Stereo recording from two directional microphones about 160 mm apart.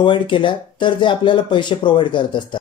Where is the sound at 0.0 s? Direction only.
30° left (ahead or behind).